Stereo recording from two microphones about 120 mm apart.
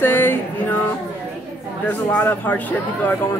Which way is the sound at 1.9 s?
15° left (ahead or behind).